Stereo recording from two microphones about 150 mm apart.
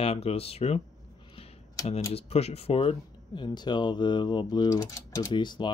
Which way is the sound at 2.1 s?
45° left (ahead or behind).